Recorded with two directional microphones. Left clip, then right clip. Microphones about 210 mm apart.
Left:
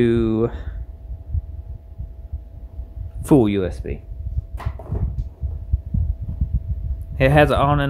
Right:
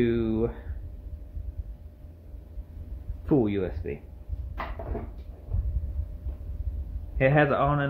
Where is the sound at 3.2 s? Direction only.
55° left (ahead or behind).